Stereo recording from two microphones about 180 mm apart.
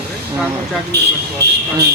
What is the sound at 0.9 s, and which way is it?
Speech, 65° right (ahead or behind).